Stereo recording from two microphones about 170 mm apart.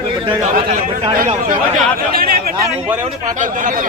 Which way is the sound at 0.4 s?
45° right (ahead or behind).